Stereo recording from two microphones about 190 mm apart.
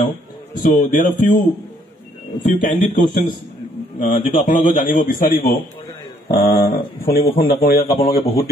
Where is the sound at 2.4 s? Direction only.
40° left (ahead or behind).